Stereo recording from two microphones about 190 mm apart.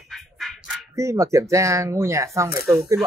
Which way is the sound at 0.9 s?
15° right (ahead or behind).